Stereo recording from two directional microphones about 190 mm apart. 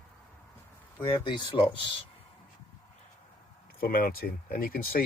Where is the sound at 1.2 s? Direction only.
25° left (ahead or behind).